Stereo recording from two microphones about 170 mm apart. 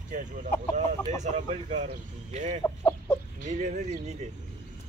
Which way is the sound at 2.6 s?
15° left (ahead or behind).